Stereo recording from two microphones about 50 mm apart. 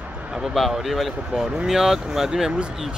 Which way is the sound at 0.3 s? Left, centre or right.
Centre.